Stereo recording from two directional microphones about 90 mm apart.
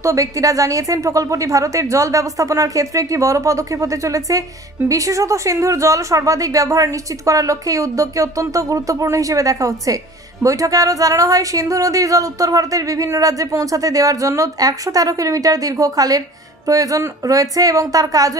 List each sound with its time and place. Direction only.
0.0 s a woman's voice: 40° right (ahead or behind)